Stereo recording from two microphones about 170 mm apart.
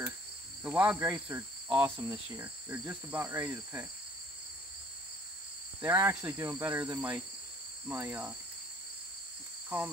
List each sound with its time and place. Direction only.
0.7 s cricket: 15° right (ahead or behind)
5.8 s cricket: 15° right (ahead or behind)
9.7 s cricket: 10° right (ahead or behind)